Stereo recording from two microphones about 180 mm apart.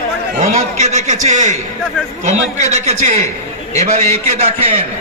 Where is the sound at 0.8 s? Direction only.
40° right (ahead or behind).